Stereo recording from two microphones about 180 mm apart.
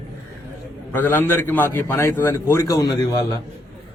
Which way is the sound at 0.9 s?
10° left (ahead or behind).